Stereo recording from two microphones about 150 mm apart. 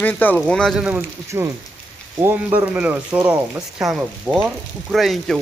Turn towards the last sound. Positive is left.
turn(degrees=0)  # may be behind; listen again after turning